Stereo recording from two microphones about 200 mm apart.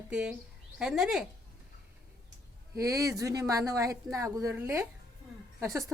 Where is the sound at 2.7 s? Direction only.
15° right (ahead or behind).